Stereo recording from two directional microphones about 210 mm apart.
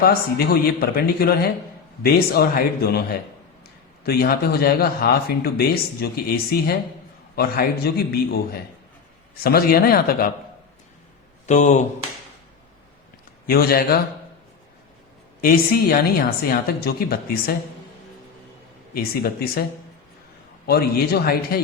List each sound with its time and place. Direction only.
0.0 s speech: 45° left (ahead or behind)
9.4 s speech: 45° left (ahead or behind)
11.4 s speech: 35° left (ahead or behind)
13.5 s speech: 45° left (ahead or behind)
15.4 s speech: 45° left (ahead or behind)
18.9 s speech: 45° left (ahead or behind)
20.7 s speech: 50° left (ahead or behind)